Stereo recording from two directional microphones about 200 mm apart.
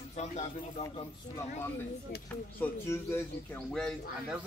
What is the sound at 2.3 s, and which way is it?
Speech, 10° left (ahead or behind).